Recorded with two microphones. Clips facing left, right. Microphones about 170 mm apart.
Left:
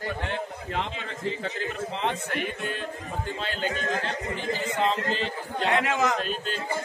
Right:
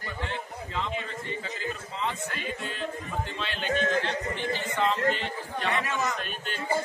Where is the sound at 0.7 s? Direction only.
80° left.